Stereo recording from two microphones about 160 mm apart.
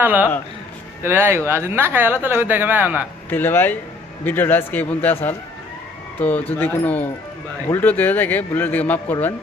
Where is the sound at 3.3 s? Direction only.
15° left (ahead or behind).